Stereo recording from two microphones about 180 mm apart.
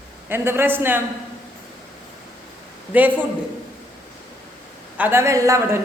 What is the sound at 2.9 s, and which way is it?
Speech, 10° right (ahead or behind).